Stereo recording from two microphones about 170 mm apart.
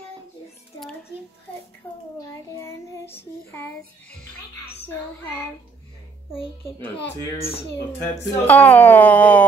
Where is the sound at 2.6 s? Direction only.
10° left (ahead or behind).